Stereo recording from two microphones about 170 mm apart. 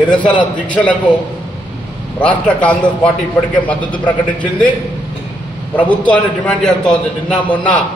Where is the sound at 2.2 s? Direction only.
5° left (ahead or behind).